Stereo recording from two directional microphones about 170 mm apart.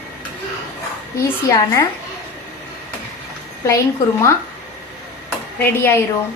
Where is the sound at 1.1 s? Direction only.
20° left (ahead or behind).